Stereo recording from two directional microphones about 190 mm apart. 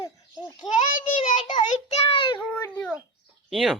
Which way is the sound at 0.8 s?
45° left (ahead or behind).